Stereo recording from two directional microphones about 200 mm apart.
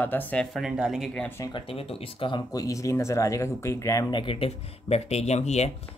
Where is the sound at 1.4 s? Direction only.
25° left (ahead or behind).